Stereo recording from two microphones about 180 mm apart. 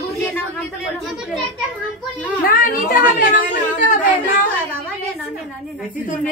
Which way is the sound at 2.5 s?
50° left (ahead or behind).